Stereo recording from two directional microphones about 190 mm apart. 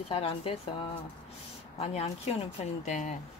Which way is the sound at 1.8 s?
35° left (ahead or behind).